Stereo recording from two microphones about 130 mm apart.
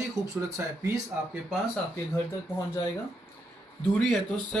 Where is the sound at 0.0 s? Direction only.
20° right (ahead or behind).